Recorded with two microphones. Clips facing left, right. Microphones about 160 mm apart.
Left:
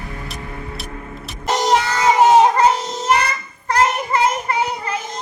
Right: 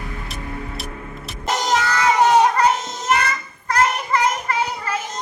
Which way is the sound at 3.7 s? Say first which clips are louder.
Left 2 dB; 20° left (ahead or behind).